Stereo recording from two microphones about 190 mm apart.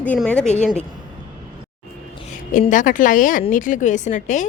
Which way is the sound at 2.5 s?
45° left (ahead or behind).